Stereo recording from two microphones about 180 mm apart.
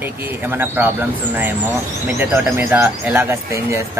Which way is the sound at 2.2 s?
10° right (ahead or behind).